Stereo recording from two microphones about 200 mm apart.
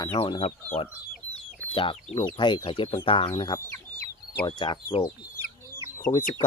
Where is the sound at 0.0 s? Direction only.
25° left (ahead or behind).